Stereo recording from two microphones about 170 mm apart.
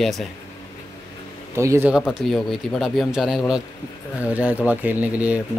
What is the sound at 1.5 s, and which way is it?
Speech, 15° right (ahead or behind).